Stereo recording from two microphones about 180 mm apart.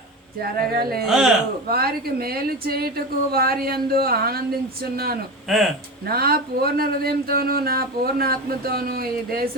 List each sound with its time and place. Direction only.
0.4 s a woman's voice: 60° right (ahead or behind)
1.0 s speech: 5° right (ahead or behind)
1.6 s a woman's voice: 55° right (ahead or behind)
5.5 s speech: centre (ahead or behind)
6.1 s a woman's voice: 60° right (ahead or behind)